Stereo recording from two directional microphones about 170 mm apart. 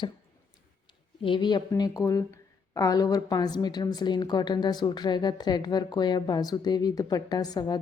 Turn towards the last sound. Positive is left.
turn(degrees=25)  # may be behind; listen again after turning